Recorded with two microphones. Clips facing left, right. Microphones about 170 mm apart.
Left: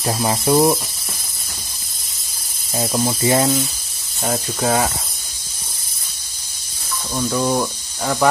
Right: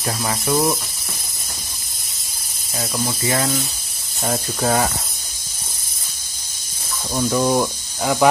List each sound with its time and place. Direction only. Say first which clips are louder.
0.0 s speech: left 4 dB; 25° left (ahead or behind)
2.8 s speech: left 5 dB; 25° left (ahead or behind)
4.2 s snake: left 1 dB; centre (ahead or behind)
7.2 s speech: right 1 dB; 10° right (ahead or behind)